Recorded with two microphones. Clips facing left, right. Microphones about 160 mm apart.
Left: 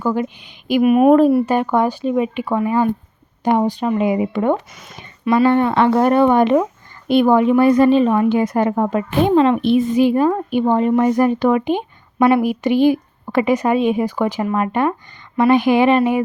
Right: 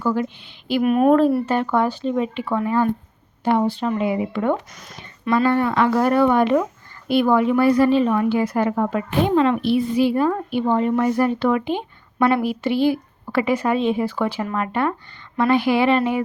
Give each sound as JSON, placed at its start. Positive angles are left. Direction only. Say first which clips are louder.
{"t": 0.0, "sound": "speech", "louder": "left 2 dB", "side_deg": 15}
{"t": 4.7, "sound": "speech", "louder": "left 1 dB", "side_deg": 0}
{"t": 4.9, "sound": "a woman's voice", "louder": "left 4 dB", "side_deg": 15}